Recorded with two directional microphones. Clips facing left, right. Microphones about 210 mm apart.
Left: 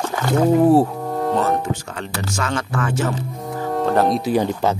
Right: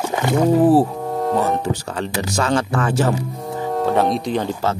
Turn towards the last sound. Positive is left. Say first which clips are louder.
# left 2 dB
turn(degrees=15)  # may be behind; listen again after turning